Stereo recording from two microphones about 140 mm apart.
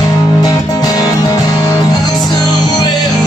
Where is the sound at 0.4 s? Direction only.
30° left (ahead or behind).